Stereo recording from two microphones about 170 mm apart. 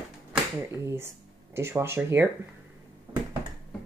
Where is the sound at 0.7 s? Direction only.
15° right (ahead or behind).